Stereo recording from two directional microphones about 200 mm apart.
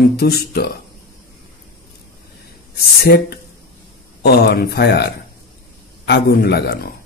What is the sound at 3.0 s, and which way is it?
Speech, 50° left (ahead or behind).